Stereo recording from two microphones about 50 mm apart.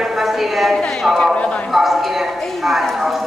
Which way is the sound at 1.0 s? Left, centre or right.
Centre.